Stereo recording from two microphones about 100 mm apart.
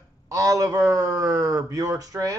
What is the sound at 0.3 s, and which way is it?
Speech, 35° right (ahead or behind).